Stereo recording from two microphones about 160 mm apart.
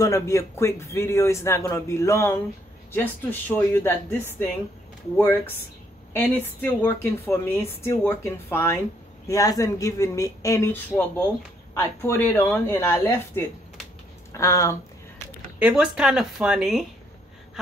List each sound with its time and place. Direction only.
0.0 s a woman's voice: 20° left (ahead or behind)
15.6 s speech: 5° right (ahead or behind)